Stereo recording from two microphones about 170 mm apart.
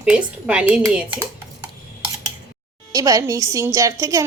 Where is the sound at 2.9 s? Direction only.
20° right (ahead or behind).